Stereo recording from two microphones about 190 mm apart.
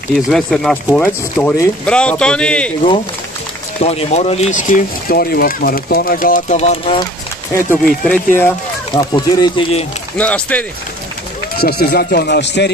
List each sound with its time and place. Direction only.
0.1 s speech: centre (ahead or behind)
3.8 s speech: 35° left (ahead or behind)
7.5 s speech: 10° left (ahead or behind)
8.9 s speech: 25° left (ahead or behind)
10.1 s speech: 5° left (ahead or behind)
11.5 s speech: 55° left (ahead or behind)